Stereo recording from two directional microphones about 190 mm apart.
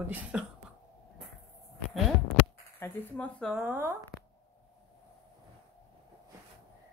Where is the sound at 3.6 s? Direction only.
10° right (ahead or behind).